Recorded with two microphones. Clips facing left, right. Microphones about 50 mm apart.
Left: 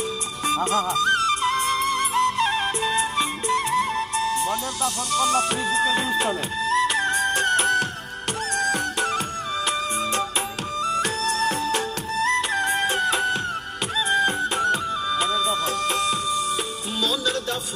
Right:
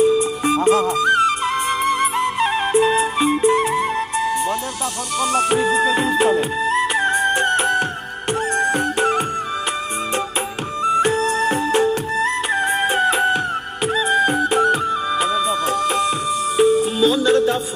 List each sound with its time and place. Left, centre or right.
0.0 s music: centre
10.8 s music: right